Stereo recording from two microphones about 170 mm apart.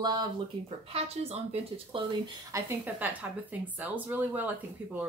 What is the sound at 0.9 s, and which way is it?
Speech, 40° right (ahead or behind).